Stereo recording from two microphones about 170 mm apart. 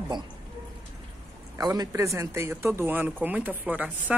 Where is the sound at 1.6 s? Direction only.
20° right (ahead or behind).